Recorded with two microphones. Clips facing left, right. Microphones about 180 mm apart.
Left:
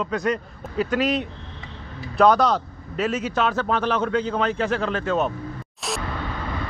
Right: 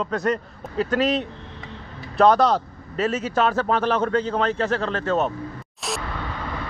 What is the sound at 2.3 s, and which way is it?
Speech, 30° right (ahead or behind).